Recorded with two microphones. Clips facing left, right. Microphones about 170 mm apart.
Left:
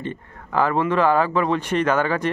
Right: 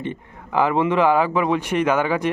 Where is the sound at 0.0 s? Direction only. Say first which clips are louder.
Right 1 dB; 15° right (ahead or behind).